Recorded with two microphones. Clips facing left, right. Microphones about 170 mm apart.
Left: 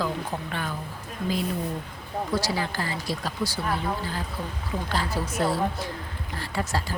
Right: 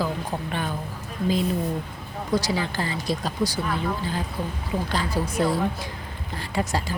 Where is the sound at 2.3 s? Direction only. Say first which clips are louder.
Right 4 dB; 20° right (ahead or behind).